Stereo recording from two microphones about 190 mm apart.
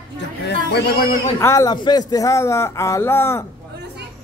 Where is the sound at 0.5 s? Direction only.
55° left (ahead or behind).